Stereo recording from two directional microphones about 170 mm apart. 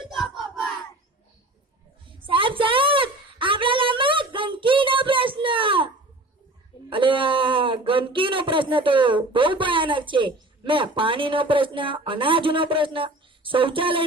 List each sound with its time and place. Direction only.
0.1 s battle cry: centre (ahead or behind)
2.0 s a sound: 30° right (ahead or behind)
6.9 s speech: 30° right (ahead or behind)